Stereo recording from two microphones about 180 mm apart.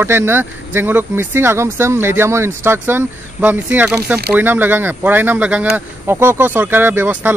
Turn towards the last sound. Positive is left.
turn(degrees=-10)  # may be behind; listen again after turning